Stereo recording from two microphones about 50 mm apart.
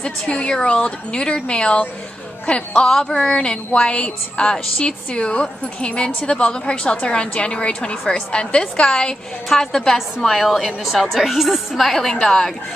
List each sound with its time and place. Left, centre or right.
0.3 s a woman's voice: centre
9.9 s a woman's voice: centre